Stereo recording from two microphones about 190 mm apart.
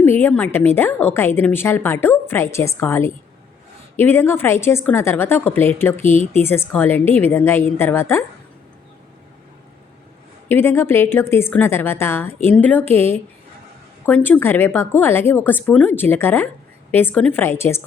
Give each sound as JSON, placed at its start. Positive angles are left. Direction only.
{"t": 0.0, "sound": "a woman's voice", "side_deg": 10}
{"t": 10.5, "sound": "a woman's voice", "side_deg": 10}